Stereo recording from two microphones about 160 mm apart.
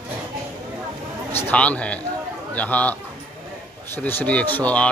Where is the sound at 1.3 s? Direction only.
10° left (ahead or behind).